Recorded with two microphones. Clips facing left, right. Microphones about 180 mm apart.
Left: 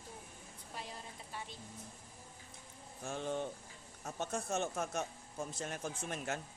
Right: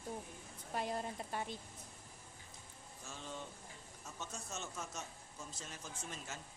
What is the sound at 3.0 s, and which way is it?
A man's voice, 60° left (ahead or behind).